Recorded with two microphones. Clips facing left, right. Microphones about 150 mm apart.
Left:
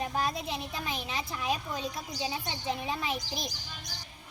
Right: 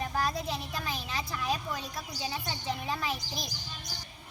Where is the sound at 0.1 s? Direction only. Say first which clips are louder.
Even; 20° left (ahead or behind).